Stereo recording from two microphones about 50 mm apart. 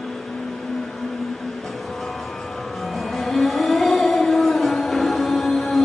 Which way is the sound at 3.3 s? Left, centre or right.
Centre.